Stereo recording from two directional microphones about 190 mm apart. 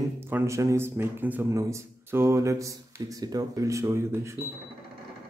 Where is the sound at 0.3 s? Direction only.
15° right (ahead or behind).